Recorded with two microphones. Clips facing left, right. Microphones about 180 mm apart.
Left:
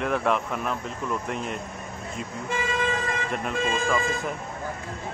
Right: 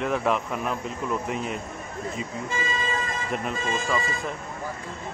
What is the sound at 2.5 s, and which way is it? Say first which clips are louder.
Vehicle: left 5 dB; 60° left (ahead or behind).